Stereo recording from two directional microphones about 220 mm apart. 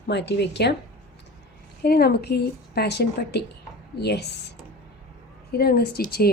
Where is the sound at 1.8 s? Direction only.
45° left (ahead or behind).